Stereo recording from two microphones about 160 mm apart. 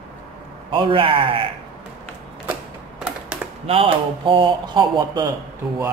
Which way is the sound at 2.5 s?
5° right (ahead or behind).